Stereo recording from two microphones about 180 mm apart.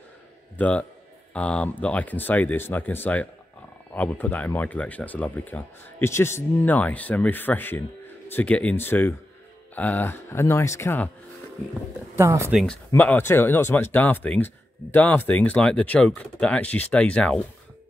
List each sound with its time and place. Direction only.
0.6 s speech: 5° left (ahead or behind)
12.2 s speech: 15° right (ahead or behind)
12.5 s speech: 5° left (ahead or behind)